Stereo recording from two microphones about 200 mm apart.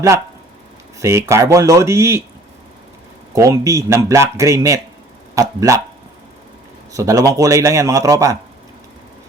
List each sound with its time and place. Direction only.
0.9 s speech: 15° right (ahead or behind)
3.3 s speech: 15° right (ahead or behind)
6.9 s speech: 15° right (ahead or behind)